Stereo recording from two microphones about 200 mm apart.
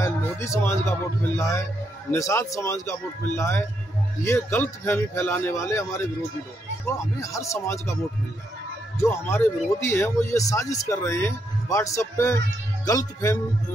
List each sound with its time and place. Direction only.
0.0 s a sound: 15° left (ahead or behind)
1.2 s speech: 10° left (ahead or behind)
9.0 s speech: 10° left (ahead or behind)